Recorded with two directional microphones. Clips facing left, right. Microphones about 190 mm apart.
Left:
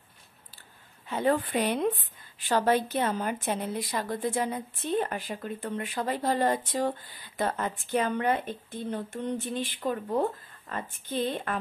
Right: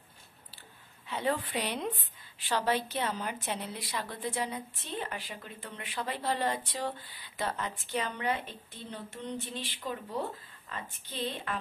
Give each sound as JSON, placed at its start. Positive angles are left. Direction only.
{"t": 1.0, "sound": "a woman's voice", "side_deg": 45}